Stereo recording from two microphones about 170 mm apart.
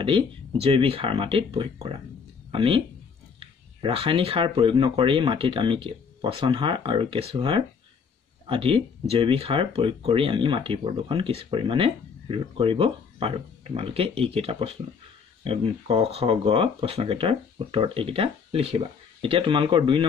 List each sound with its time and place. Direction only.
0.0 s speech: 30° right (ahead or behind)